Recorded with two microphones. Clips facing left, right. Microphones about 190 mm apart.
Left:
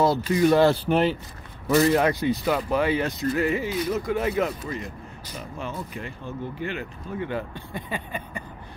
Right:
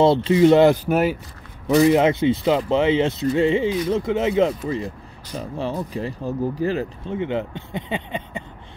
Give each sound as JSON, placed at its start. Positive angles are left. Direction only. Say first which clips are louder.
{"t": 0.0, "sound": "speech", "louder": "right 6 dB", "side_deg": -25}
{"t": 0.8, "sound": "speech", "louder": "right 2 dB", "side_deg": -5}
{"t": 1.8, "sound": "speech", "louder": "right 5 dB", "side_deg": -20}
{"t": 7.2, "sound": "speech", "louder": "right 5 dB", "side_deg": -20}